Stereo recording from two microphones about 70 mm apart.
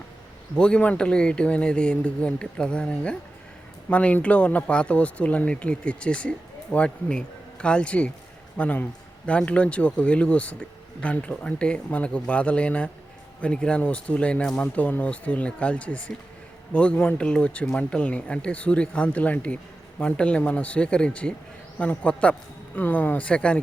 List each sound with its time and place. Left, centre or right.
0.5 s a man's voice: centre